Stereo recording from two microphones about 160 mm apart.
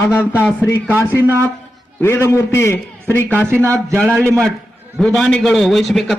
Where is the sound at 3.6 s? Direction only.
15° right (ahead or behind).